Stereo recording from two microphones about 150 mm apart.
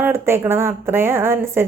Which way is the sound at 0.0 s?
15° right (ahead or behind).